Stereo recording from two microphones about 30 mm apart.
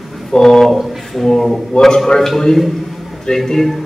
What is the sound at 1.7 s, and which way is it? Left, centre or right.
Speech, left.